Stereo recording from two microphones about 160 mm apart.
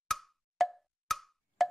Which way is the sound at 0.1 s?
Centre (ahead or behind).